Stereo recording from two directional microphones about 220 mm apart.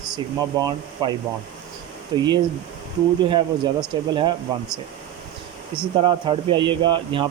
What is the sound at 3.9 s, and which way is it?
Speech, 20° right (ahead or behind).